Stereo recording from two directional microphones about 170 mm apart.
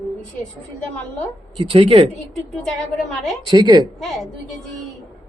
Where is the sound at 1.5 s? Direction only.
30° right (ahead or behind).